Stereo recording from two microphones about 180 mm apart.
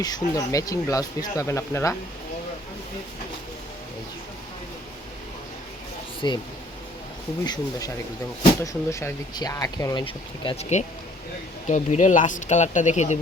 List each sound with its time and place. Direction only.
0.0 s speech: 20° left (ahead or behind)
6.2 s speech: 20° left (ahead or behind)
7.4 s speech: 25° left (ahead or behind); by 13.1 s 40° left (ahead or behind)